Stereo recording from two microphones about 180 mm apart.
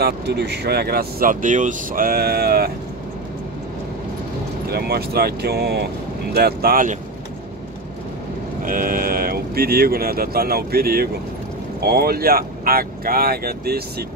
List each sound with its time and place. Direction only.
0.0 s speech: 65° right (ahead or behind)
4.6 s speech: 60° right (ahead or behind)
8.6 s speech: 50° right (ahead or behind)